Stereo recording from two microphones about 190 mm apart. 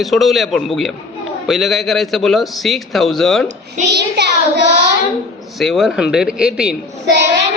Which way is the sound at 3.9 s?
60° right (ahead or behind).